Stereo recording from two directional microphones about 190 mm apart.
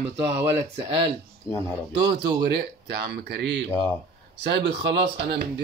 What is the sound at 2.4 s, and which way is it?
Speech, 60° right (ahead or behind).